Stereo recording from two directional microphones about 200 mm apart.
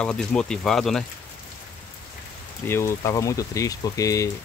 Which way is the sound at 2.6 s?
15° left (ahead or behind).